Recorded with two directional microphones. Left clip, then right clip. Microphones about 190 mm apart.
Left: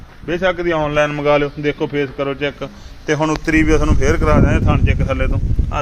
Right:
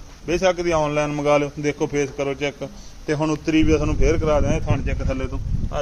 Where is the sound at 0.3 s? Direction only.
10° right (ahead or behind).